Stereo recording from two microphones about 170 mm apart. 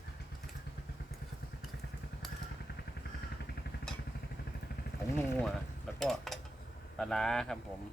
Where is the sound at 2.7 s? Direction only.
70° left (ahead or behind).